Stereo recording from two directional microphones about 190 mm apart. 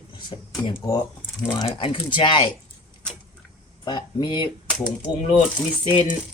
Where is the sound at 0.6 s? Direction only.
25° left (ahead or behind).